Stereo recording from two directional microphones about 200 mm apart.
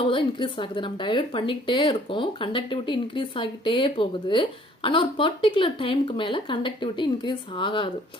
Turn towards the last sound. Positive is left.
turn(degrees=25)  # may be behind; listen again after turning